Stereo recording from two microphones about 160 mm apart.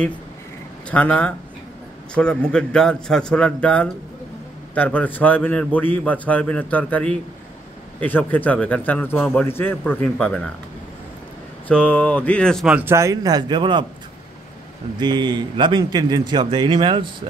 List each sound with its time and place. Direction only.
0.8 s a man's voice: 10° left (ahead or behind)
11.6 s a man's voice: 10° left (ahead or behind)
12.7 s a man's voice: 15° right (ahead or behind)
15.0 s a man's voice: 30° right (ahead or behind)